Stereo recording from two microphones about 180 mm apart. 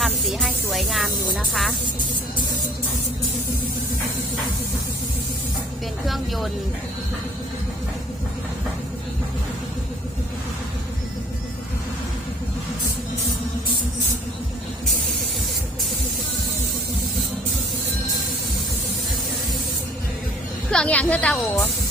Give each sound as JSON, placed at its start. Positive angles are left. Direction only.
{"t": 0.0, "sound": "spray", "side_deg": 0}
{"t": 6.1, "sound": "speech", "side_deg": 0}
{"t": 20.7, "sound": "a woman's voice", "side_deg": 5}